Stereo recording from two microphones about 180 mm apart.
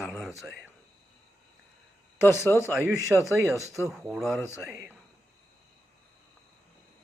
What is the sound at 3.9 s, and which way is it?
A man's voice, 5° right (ahead or behind).